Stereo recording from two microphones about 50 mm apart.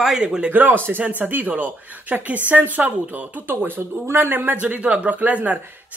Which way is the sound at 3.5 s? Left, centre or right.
Right.